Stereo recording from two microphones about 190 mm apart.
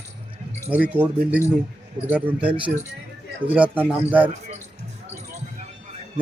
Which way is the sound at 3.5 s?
5° right (ahead or behind).